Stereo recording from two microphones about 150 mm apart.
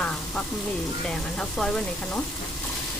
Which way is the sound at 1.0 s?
5° left (ahead or behind).